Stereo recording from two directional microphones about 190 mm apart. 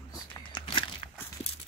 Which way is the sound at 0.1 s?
25° left (ahead or behind).